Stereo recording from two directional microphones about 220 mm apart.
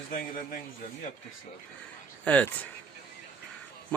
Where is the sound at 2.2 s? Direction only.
5° left (ahead or behind).